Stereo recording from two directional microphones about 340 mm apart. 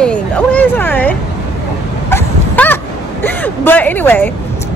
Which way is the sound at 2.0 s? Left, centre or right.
Centre.